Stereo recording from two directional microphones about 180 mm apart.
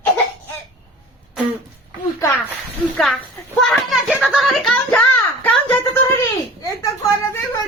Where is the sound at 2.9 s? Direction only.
5° left (ahead or behind).